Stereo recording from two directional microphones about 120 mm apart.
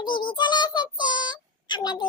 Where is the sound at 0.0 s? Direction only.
40° left (ahead or behind).